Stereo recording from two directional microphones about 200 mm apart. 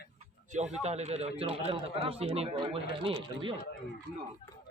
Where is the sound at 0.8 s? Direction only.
30° right (ahead or behind).